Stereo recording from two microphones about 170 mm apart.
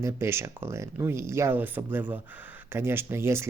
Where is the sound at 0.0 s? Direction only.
15° right (ahead or behind).